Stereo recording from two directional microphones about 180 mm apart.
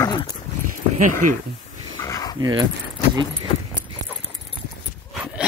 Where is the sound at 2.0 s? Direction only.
20° left (ahead or behind).